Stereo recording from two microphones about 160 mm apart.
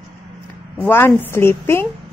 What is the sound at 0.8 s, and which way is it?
A woman's voice, 15° left (ahead or behind).